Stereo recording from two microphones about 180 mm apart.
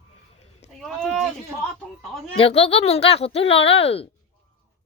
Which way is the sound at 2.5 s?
35° left (ahead or behind).